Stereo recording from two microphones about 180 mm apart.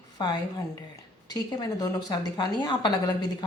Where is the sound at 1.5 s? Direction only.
20° left (ahead or behind).